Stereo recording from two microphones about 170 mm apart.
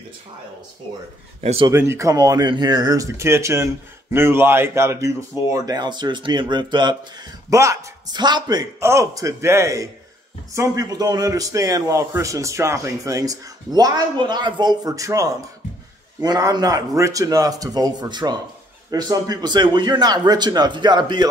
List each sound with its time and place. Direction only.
1.4 s speech: 35° right (ahead or behind)
1.7 s a man's voice: 15° right (ahead or behind)